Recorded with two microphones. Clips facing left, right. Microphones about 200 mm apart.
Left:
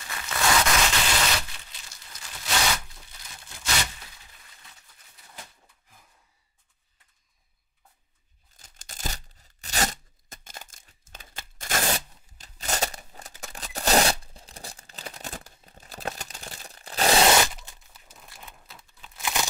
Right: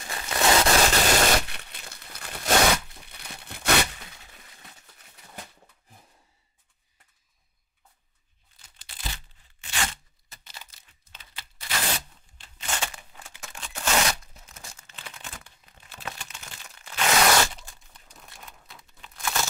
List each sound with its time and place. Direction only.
0.1 s a sound: 30° right (ahead or behind); by 1.4 s 45° right (ahead or behind)
1.4 s crumpling: 65° right (ahead or behind)
8.5 s tearing: 45° left (ahead or behind); by 17.4 s 30° left (ahead or behind)
17.9 s crumpling: 5° left (ahead or behind)